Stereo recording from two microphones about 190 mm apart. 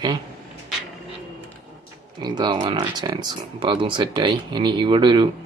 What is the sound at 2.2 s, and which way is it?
Speech, 20° right (ahead or behind).